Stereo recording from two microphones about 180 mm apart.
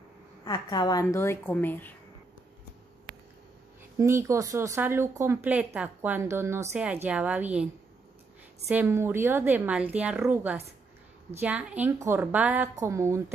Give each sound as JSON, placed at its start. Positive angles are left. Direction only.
{"t": 0.5, "sound": "a woman's voice", "side_deg": 20}
{"t": 4.0, "sound": "speech", "side_deg": -15}
{"t": 8.6, "sound": "speech", "side_deg": -10}